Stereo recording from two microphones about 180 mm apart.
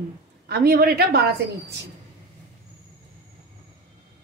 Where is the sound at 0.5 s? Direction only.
55° right (ahead or behind).